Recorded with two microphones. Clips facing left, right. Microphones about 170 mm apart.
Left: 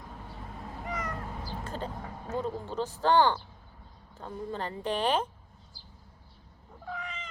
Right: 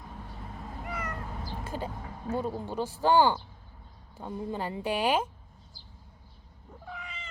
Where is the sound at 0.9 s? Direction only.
10° right (ahead or behind).